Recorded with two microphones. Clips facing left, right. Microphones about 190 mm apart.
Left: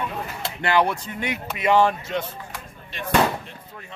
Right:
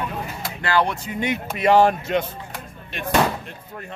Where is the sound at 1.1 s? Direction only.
15° right (ahead or behind).